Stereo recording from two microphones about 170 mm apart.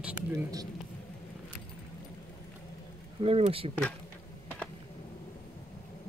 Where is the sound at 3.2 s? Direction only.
35° right (ahead or behind).